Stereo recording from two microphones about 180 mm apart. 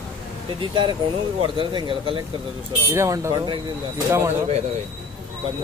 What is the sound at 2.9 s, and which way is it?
Speech, 15° right (ahead or behind).